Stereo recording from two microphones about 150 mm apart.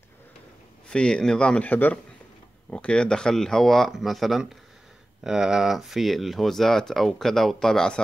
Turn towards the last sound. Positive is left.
turn(degrees=5)  # may be behind; listen again after turning